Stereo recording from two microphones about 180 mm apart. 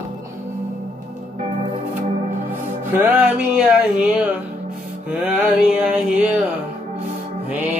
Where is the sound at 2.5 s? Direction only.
10° right (ahead or behind).